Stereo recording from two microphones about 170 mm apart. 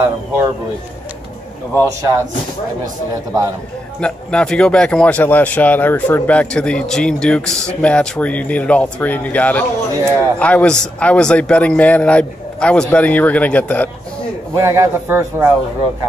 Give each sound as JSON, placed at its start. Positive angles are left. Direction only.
{"t": 4.0, "sound": "speech", "side_deg": 5}
{"t": 14.5, "sound": "speech", "side_deg": -20}